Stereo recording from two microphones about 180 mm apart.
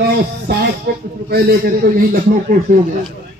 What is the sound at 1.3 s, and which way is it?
A man's voice, 55° right (ahead or behind).